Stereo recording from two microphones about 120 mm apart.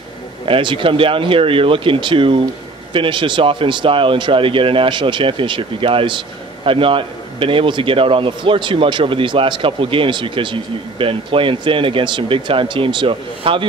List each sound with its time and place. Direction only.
0.5 s speech: 45° right (ahead or behind)